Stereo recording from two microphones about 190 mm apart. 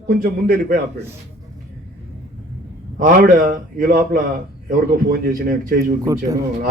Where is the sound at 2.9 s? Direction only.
45° right (ahead or behind).